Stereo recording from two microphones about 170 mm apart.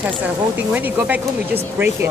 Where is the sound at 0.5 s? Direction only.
10° right (ahead or behind).